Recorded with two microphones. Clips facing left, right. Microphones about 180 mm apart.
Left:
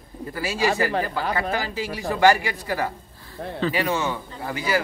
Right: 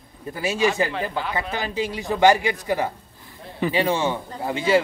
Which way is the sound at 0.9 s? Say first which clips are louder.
Left 2 dB; 40° left (ahead or behind).